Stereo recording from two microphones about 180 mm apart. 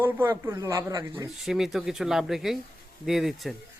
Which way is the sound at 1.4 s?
Centre (ahead or behind).